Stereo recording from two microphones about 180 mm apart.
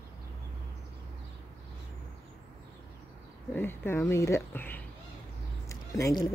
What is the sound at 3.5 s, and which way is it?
Speech, 10° left (ahead or behind).